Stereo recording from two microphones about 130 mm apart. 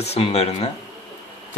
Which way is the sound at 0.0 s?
55° left (ahead or behind).